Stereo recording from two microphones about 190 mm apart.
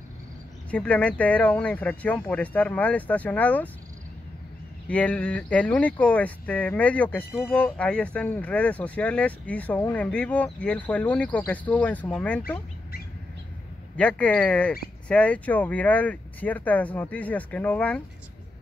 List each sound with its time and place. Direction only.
0.7 s speech: 5° left (ahead or behind)
4.8 s speech: 5° left (ahead or behind)
13.9 s speech: 5° left (ahead or behind)